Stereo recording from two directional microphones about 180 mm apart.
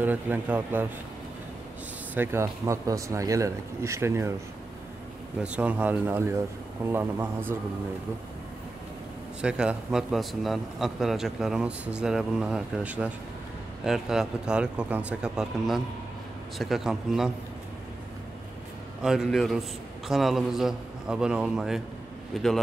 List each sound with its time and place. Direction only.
0.0 s speech: 10° right (ahead or behind)
2.1 s speech: 15° right (ahead or behind)
5.4 s speech: 5° right (ahead or behind)
9.4 s a man's voice: 5° right (ahead or behind)
19.0 s a man's voice: centre (ahead or behind)